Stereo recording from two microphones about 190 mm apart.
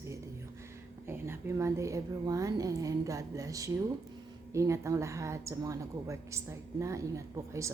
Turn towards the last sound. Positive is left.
turn(degrees=-15)  # may be behind; listen again after turning